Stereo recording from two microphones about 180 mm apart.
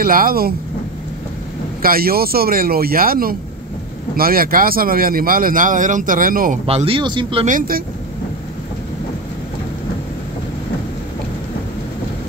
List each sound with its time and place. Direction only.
0.0 s speech: 55° right (ahead or behind)
1.8 s speech: 55° right (ahead or behind)
6.6 s speech: 30° right (ahead or behind)
7.4 s speech: 50° right (ahead or behind)